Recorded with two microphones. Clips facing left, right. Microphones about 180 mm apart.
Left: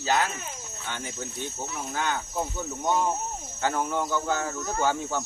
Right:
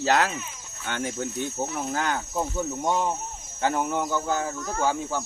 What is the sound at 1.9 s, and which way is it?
Speech, 45° right (ahead or behind).